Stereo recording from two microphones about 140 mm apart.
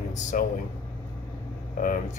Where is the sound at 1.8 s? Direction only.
80° left.